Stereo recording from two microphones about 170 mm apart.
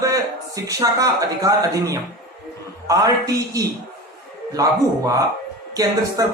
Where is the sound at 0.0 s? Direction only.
20° right (ahead or behind).